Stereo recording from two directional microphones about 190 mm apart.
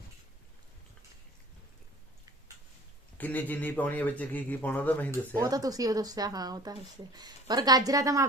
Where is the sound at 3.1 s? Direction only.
10° left (ahead or behind).